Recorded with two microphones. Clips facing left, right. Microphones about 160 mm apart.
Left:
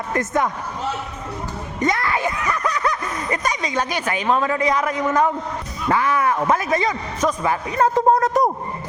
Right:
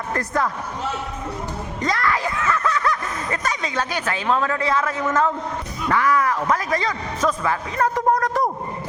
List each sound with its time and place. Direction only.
0.1 s a man's voice: 20° left (ahead or behind)
1.8 s a sound: 20° left (ahead or behind)
3.3 s a man's voice: 10° left (ahead or behind)
5.9 s a man's voice: 25° left (ahead or behind)